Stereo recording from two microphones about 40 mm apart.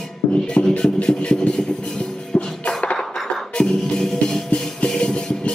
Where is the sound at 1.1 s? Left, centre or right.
Left.